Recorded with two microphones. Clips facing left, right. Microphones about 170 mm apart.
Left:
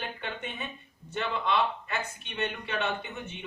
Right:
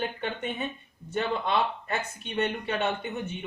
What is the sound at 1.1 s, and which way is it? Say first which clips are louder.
Speech: right 2 dB; 40° right (ahead or behind).